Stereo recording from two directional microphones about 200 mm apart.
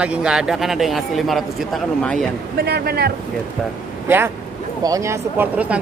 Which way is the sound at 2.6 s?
55° right (ahead or behind).